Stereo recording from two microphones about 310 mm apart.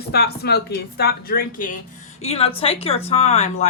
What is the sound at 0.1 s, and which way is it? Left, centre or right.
A woman's voice, left.